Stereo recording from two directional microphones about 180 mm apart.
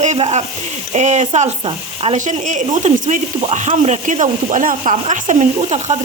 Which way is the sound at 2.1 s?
45° right (ahead or behind).